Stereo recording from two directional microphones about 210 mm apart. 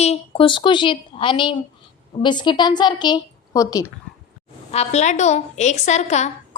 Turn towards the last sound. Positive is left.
turn(degrees=35)  # may be behind; listen again after turning